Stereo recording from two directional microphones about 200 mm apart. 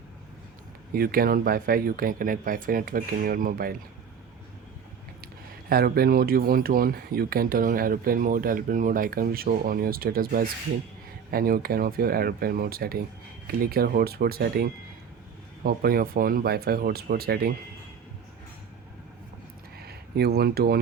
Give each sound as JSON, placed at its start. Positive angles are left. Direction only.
{"t": 0.9, "sound": "speech", "side_deg": -50}
{"t": 5.2, "sound": "speech", "side_deg": -50}
{"t": 19.8, "sound": "speech", "side_deg": -50}